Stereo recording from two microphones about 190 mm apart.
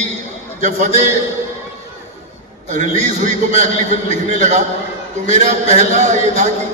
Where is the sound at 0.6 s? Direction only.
40° right (ahead or behind).